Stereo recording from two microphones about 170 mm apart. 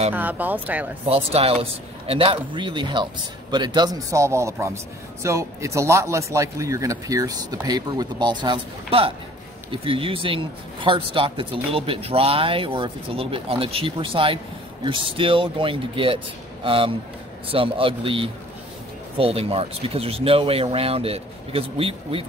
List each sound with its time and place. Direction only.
0.1 s a man's voice: 10° right (ahead or behind)
1.0 s a man's voice: 35° right (ahead or behind)